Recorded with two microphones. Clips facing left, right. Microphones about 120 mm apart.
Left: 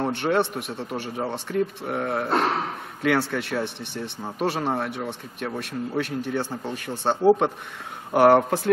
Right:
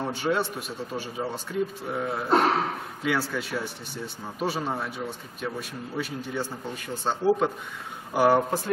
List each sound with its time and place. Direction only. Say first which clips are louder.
0.1 s a man's voice: left 4 dB; 65° left (ahead or behind)